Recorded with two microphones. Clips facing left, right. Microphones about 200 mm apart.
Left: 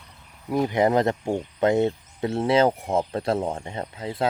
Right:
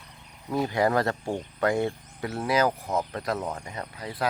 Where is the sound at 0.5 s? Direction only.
20° left (ahead or behind).